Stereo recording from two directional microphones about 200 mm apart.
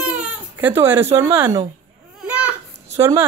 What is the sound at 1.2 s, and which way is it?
Speech, 15° right (ahead or behind).